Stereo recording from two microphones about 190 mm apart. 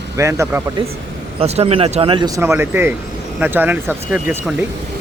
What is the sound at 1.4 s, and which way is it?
Speech, 35° right (ahead or behind).